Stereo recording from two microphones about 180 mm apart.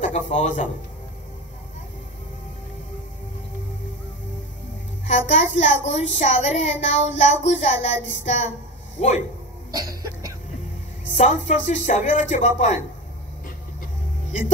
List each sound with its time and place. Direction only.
0.0 s a man's voice: 40° left (ahead or behind)
5.0 s a woman's voice: 40° left (ahead or behind)
9.7 s cough: 20° right (ahead or behind)
11.1 s a woman's voice: 40° left (ahead or behind)